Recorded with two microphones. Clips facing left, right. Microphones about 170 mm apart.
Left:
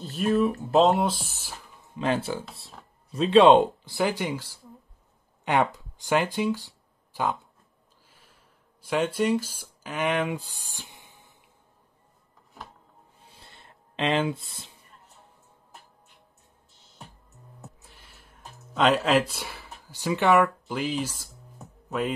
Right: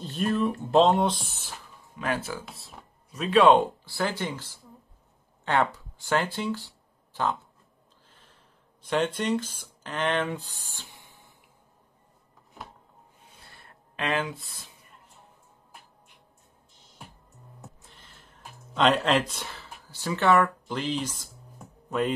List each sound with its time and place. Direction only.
0.0 s speech: 5° left (ahead or behind)
2.0 s speech: 25° left (ahead or behind)
8.1 s a sound: 10° left (ahead or behind)
8.8 s speech: 5° left (ahead or behind); by 11.3 s 20° left (ahead or behind)
13.5 s a sound: 20° left (ahead or behind)
17.6 s music: 10° left (ahead or behind)
18.8 s speech: 5° left (ahead or behind)